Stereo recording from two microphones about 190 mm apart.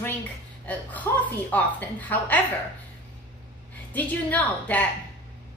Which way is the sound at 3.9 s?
10° left (ahead or behind).